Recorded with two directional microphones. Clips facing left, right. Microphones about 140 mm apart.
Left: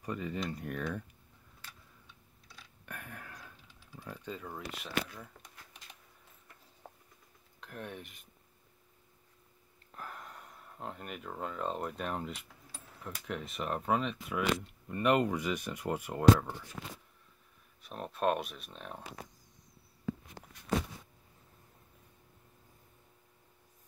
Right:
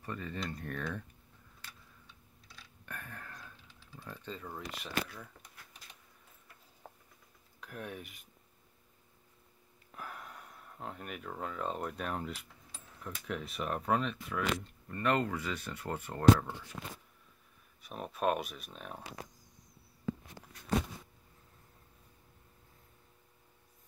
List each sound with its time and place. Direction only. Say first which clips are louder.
0.0 s speech: left 3 dB; 15° left (ahead or behind)
2.8 s speech: even; 10° left (ahead or behind)
6.8 s patter: even; 5° left (ahead or behind)
7.6 s speech: even; 5° right (ahead or behind)
9.9 s a sound: even; 5° right (ahead or behind)
13.3 s speech: even; centre (ahead or behind)
14.9 s speech: left 3 dB; 15° left (ahead or behind)
17.8 s speech: left 1 dB; 5° right (ahead or behind)